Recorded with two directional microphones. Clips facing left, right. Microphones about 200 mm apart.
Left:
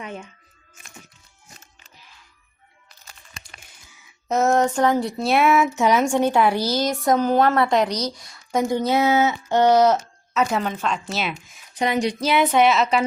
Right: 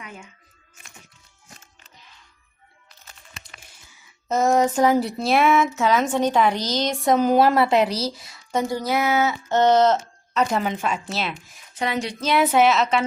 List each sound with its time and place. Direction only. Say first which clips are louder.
0.0 s a sound: left 7 dB; 30° left (ahead or behind)
4.4 s a woman's voice: right 1 dB; 5° right (ahead or behind)
5.7 s a woman's voice: left 2 dB; 15° left (ahead or behind); by 8.4 s 5° right (ahead or behind)
8.5 s speech: left 3 dB; 20° left (ahead or behind)
9.5 s female singing: left 1 dB; 10° left (ahead or behind)
10.0 s a sound: even; centre (ahead or behind)
10.7 s speech: even; 10° right (ahead or behind)
11.7 s female singing: left 4 dB; 15° left (ahead or behind)
12.3 s a woman's voice: right 1 dB; 5° right (ahead or behind)